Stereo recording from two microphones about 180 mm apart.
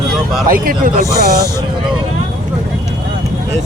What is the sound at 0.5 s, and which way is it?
Speech, 50° right (ahead or behind).